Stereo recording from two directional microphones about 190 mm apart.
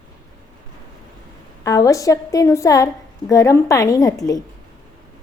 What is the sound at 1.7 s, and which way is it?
A woman's voice, 15° left (ahead or behind).